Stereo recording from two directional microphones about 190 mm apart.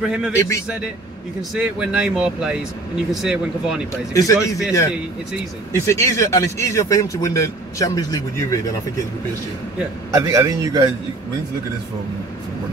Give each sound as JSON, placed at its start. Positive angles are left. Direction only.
{"t": 0.0, "sound": "speech", "side_deg": 0}
{"t": 1.5, "sound": "speech", "side_deg": -5}
{"t": 4.1, "sound": "a man's voice", "side_deg": 15}
{"t": 10.1, "sound": "a man's voice", "side_deg": -15}